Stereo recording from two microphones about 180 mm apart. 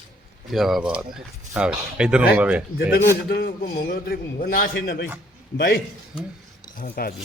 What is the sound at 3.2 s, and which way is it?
A man's voice, 60° left (ahead or behind).